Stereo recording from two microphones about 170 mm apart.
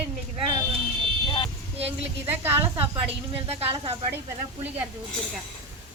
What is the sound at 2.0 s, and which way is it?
Speech, 10° right (ahead or behind).